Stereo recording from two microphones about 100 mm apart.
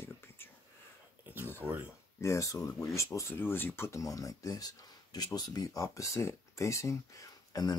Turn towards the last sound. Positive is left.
turn(degrees=35)  # may be behind; listen again after turning